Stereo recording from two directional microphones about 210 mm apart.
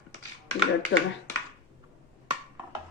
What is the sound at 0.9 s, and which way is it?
Speech, 60° left (ahead or behind).